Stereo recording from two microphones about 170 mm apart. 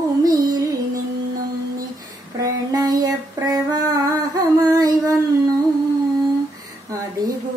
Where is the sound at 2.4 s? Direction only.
20° right (ahead or behind).